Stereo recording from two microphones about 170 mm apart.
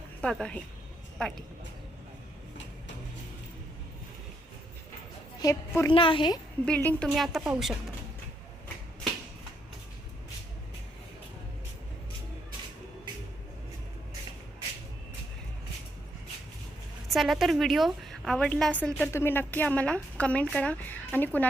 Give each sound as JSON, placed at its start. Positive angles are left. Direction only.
{"t": 0.2, "sound": "a woman's voice", "side_deg": 5}
{"t": 5.4, "sound": "a woman's voice", "side_deg": 20}
{"t": 5.9, "sound": "a woman's voice", "side_deg": 30}
{"t": 6.7, "sound": "a woman's voice", "side_deg": 5}
{"t": 17.1, "sound": "a woman's voice", "side_deg": 0}